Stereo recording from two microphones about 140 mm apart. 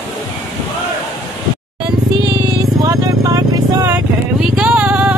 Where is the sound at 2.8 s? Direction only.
25° right (ahead or behind).